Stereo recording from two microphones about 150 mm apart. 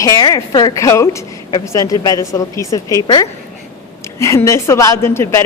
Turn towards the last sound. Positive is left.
turn(degrees=15)  # may be behind; listen again after turning